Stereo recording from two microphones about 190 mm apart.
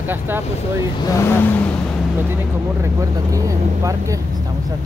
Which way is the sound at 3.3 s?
15° right (ahead or behind).